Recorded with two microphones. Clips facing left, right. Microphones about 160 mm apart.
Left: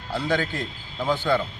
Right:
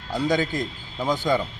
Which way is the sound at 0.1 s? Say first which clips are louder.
Right 2 dB; 10° right (ahead or behind).